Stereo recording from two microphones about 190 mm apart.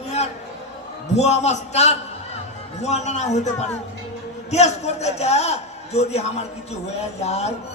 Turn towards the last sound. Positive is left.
turn(degrees=35)  # may be behind; listen again after turning